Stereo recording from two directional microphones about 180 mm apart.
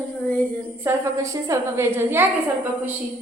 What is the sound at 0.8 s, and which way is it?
A woman's voice, 15° right (ahead or behind).